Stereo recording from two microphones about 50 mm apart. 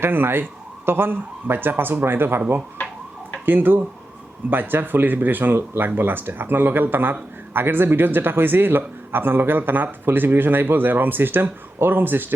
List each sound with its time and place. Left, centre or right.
0.0 s speech: right
2.8 s a sound: left
3.4 s speech: right